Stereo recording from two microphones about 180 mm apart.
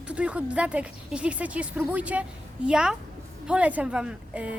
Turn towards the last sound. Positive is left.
turn(degrees=-5)  # may be behind; listen again after turning